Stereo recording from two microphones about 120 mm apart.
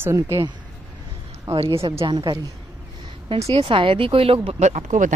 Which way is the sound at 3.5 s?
50° right (ahead or behind).